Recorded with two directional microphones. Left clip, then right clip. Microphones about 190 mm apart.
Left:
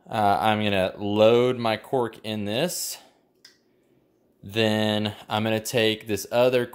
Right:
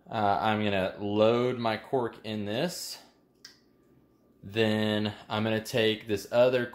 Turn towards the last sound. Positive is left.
turn(degrees=50)  # may be behind; listen again after turning